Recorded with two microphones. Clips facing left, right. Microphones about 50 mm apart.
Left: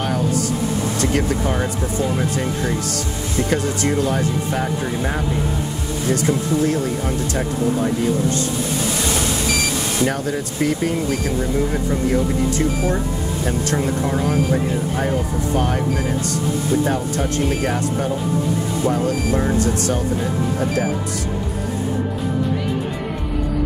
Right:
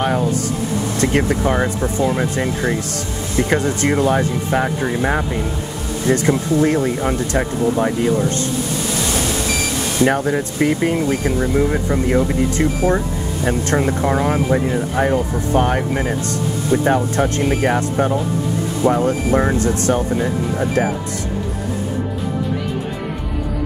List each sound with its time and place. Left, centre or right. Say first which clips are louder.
0.9 s speech: right 6 dB; right
9.1 s speech: right 1 dB; right